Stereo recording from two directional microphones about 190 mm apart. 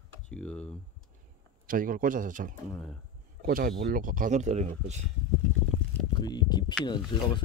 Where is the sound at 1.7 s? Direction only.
45° right (ahead or behind).